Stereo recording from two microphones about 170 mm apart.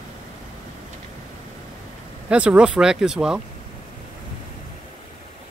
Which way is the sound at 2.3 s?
5° right (ahead or behind).